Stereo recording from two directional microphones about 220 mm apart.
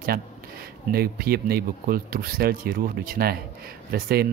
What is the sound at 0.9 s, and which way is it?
Speech, 45° right (ahead or behind).